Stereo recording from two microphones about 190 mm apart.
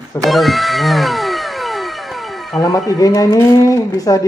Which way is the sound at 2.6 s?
20° left (ahead or behind).